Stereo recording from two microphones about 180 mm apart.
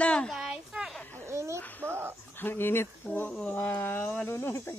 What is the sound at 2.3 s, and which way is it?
Speech, 10° left (ahead or behind).